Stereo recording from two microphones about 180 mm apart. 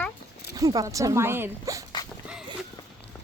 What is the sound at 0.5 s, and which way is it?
Speech, 20° right (ahead or behind).